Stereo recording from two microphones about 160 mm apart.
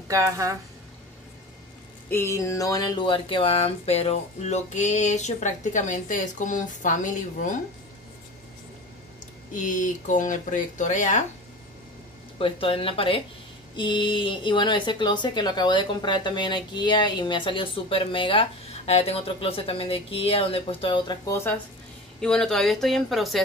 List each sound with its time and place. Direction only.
0.1 s speech: 20° right (ahead or behind)
2.0 s speech: 15° left (ahead or behind); by 7.6 s 50° left (ahead or behind)
9.5 s speech: 55° left (ahead or behind)
12.4 s speech: 35° left (ahead or behind)
22.2 s speech: 5° left (ahead or behind)